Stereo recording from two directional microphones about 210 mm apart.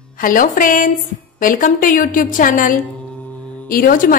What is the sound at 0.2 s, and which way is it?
A woman's voice, 40° left (ahead or behind).